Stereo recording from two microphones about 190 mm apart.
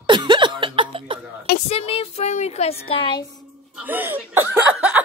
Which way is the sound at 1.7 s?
30° left (ahead or behind).